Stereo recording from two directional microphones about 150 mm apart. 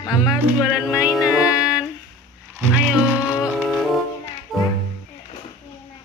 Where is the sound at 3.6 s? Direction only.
Centre (ahead or behind).